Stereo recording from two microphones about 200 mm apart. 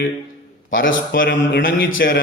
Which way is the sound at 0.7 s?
75° left (ahead or behind).